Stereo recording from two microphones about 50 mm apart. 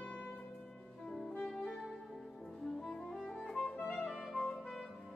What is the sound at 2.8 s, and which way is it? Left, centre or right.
Music, centre.